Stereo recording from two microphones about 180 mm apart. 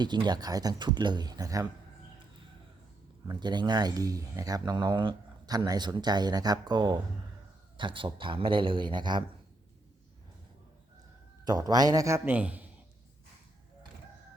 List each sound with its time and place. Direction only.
0.0 s speech: 25° right (ahead or behind)
3.2 s speech: 25° right (ahead or behind)
11.4 s speech: 20° right (ahead or behind)